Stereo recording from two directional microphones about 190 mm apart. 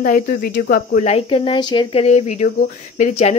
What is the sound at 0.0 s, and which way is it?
Speech, 50° left (ahead or behind).